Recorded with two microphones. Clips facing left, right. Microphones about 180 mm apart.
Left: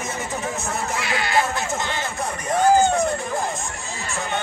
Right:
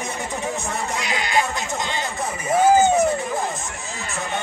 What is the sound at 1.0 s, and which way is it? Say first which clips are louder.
Music: left 1 dB; 20° right (ahead or behind).